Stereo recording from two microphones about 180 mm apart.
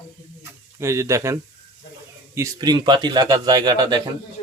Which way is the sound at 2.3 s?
20° right (ahead or behind).